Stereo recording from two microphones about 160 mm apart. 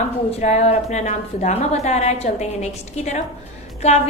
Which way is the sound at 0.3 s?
45° left (ahead or behind).